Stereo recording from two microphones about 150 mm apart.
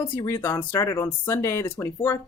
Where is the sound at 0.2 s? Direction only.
20° left (ahead or behind).